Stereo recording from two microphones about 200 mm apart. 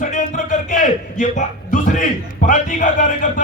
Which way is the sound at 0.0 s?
40° left (ahead or behind).